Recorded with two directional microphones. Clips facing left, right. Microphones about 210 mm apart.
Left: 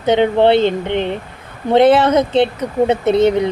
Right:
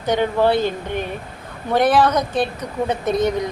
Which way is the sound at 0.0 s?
25° left (ahead or behind).